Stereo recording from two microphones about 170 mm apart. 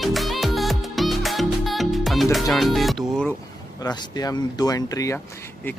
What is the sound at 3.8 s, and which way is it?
Speech, 25° left (ahead or behind).